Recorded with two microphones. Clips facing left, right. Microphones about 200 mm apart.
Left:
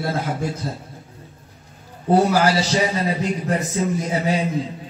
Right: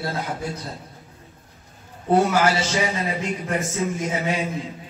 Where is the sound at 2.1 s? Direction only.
35° left (ahead or behind).